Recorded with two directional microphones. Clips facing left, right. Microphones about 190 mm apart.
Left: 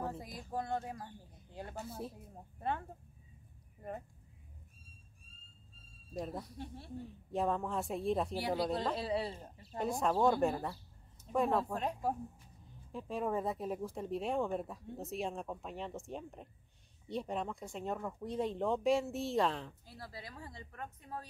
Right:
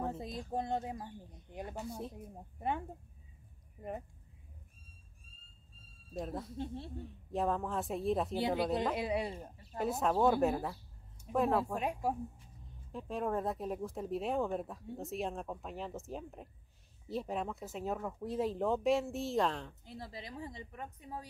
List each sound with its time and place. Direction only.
0.5 s speech: 20° right (ahead or behind)
1.9 s speech: centre (ahead or behind)
6.1 s speech: centre (ahead or behind)
6.4 s speech: 25° right (ahead or behind)
7.0 s speech: centre (ahead or behind)
8.4 s speech: 20° right (ahead or behind)
9.8 s speech: 5° right (ahead or behind)
12.6 s speech: centre (ahead or behind)
19.9 s speech: 20° right (ahead or behind)